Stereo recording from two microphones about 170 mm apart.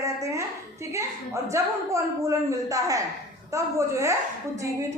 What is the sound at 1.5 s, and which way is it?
A woman's voice, 20° right (ahead or behind).